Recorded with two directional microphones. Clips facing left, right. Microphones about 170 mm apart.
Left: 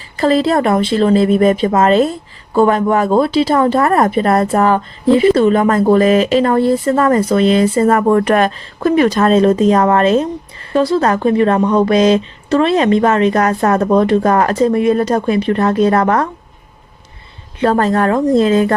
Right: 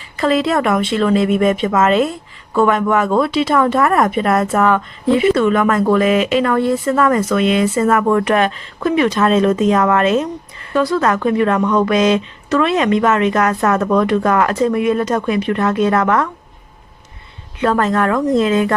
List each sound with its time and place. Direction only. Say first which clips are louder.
0.2 s speech: left 3 dB; 35° left (ahead or behind)
17.6 s speech: left 2 dB; 35° left (ahead or behind)